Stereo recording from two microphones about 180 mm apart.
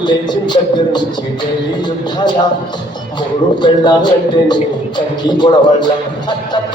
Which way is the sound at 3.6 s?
25° left (ahead or behind).